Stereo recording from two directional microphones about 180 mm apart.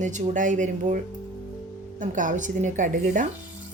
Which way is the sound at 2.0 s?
45° right (ahead or behind).